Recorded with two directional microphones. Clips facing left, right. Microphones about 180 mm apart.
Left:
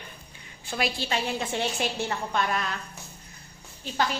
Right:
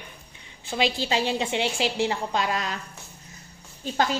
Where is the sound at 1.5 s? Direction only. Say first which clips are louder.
Right 3 dB; 85° right.